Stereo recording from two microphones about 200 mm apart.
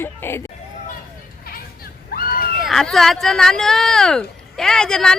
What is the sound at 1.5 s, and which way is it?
Children playing, 50° left (ahead or behind).